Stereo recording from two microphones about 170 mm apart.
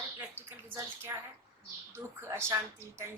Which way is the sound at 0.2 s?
15° right (ahead or behind).